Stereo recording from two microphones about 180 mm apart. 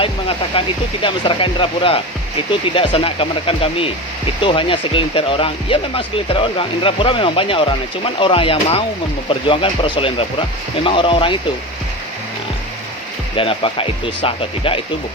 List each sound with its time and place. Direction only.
0.0 s speech: 30° left (ahead or behind)
13.3 s speech: 30° left (ahead or behind)